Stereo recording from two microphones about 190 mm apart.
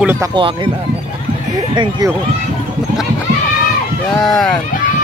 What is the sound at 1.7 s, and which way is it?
Speech, 20° right (ahead or behind).